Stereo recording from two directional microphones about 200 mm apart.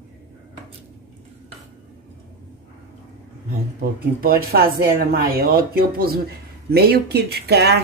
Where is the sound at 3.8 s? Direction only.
50° right (ahead or behind).